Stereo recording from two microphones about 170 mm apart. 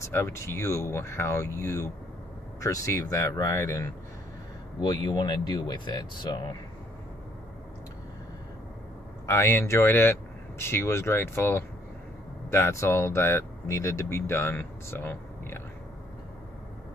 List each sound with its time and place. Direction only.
0.0 s speech: 15° left (ahead or behind)
9.2 s speech: 15° left (ahead or behind)